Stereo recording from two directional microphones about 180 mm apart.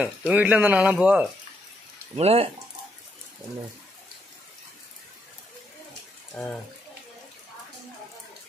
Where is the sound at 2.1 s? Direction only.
35° right (ahead or behind).